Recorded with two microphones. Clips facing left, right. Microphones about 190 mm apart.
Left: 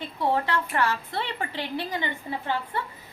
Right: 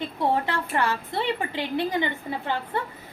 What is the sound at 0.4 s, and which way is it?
A woman's voice, 15° right (ahead or behind).